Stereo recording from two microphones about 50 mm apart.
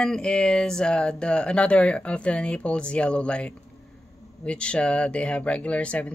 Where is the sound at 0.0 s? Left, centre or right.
Centre.